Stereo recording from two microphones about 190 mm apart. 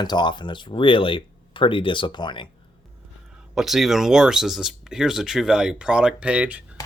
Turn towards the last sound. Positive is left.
turn(degrees=-5)  # may be behind; listen again after turning